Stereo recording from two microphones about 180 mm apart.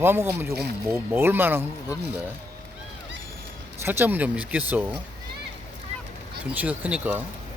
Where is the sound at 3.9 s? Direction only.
10° right (ahead or behind).